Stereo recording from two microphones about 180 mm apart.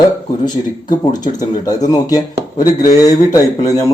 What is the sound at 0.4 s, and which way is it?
Speech, 20° left (ahead or behind).